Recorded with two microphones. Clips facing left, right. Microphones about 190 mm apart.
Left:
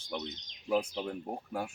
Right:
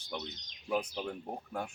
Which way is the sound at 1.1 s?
5° left (ahead or behind).